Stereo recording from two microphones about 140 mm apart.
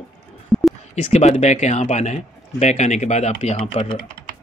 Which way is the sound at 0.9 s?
50° left (ahead or behind).